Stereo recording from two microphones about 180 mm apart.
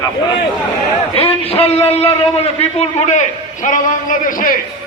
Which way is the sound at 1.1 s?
35° left (ahead or behind).